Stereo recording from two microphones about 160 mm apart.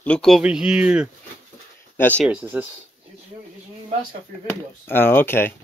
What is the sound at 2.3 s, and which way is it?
Speech, 10° right (ahead or behind).